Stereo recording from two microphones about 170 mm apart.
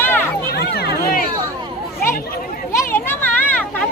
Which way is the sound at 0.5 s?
70° left (ahead or behind).